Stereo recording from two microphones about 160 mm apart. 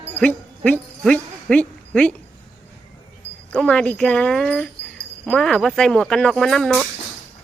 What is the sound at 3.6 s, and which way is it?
Speech, 5° left (ahead or behind).